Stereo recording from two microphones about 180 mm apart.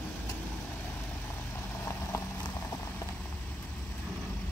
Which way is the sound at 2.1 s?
15° left (ahead or behind).